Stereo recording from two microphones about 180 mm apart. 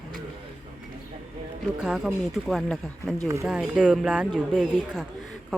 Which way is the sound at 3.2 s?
20° right (ahead or behind).